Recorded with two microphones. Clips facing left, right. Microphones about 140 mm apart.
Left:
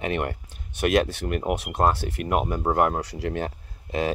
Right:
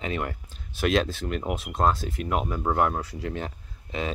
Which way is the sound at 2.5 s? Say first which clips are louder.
Left 1 dB; 35° left (ahead or behind).